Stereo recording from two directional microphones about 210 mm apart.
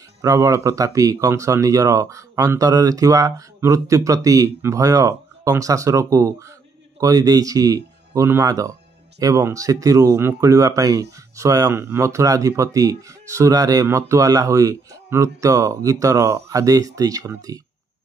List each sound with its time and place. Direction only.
0.2 s speech: 15° right (ahead or behind)